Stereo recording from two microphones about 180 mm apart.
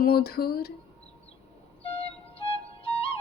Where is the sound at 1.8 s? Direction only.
35° left (ahead or behind).